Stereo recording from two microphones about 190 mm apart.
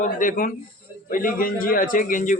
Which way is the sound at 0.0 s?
45° left (ahead or behind).